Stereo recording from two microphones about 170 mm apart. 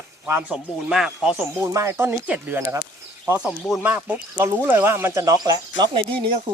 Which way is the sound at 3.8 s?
10° right (ahead or behind).